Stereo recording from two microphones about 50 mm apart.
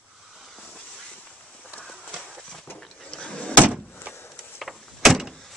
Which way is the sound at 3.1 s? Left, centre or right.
Centre.